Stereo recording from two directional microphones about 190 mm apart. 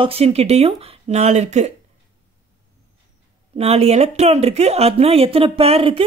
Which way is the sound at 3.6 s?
35° right (ahead or behind).